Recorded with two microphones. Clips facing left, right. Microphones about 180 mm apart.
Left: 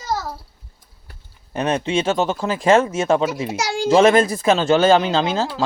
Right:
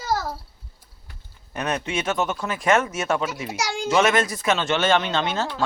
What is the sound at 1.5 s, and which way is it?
Speech, 30° left (ahead or behind).